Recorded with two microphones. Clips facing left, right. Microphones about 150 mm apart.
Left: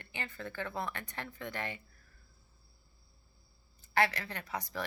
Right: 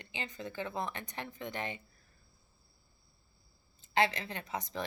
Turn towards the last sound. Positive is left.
turn(degrees=-20)  # may be behind; listen again after turning